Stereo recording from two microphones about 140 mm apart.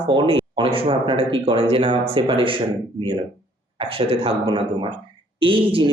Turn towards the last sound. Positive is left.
turn(degrees=-40)  # may be behind; listen again after turning